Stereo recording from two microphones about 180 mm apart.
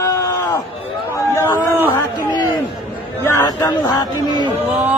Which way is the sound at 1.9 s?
25° left (ahead or behind).